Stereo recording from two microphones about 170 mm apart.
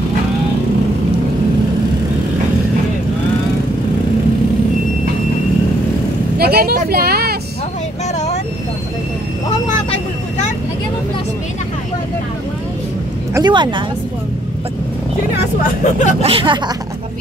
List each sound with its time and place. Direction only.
6.3 s speech: 65° right (ahead or behind)
13.3 s speech: 25° right (ahead or behind)
15.6 s speech: 45° left (ahead or behind)
16.2 s speech: 35° right (ahead or behind)